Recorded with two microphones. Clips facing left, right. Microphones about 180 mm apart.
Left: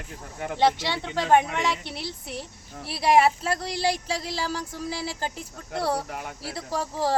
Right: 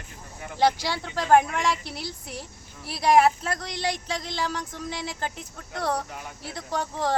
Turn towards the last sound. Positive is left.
turn(degrees=5)  # may be behind; listen again after turning